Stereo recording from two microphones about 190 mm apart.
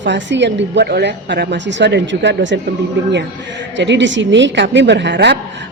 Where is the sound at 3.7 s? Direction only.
70° right (ahead or behind).